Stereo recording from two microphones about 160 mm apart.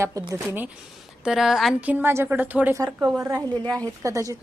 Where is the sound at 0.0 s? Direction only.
20° right (ahead or behind).